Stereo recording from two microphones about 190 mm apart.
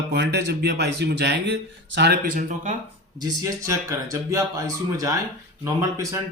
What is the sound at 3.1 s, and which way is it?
Speech, 20° right (ahead or behind).